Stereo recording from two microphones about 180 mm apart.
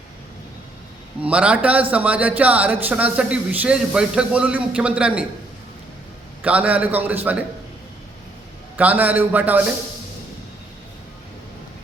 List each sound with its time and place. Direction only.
1.2 s a man's voice: 5° right (ahead or behind)
6.4 s a man's voice: 10° right (ahead or behind)
8.7 s a man's voice: 10° right (ahead or behind)